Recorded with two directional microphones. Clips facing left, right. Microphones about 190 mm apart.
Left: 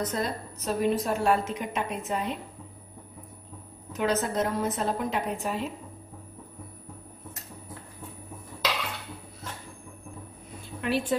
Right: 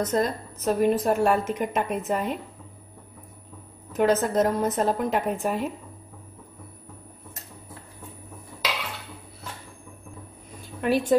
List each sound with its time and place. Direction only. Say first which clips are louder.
0.0 s a woman's voice: right 5 dB; 45° right (ahead or behind)
3.9 s a woman's voice: right 6 dB; 50° right (ahead or behind)
10.8 s speech: right 5 dB; 45° right (ahead or behind)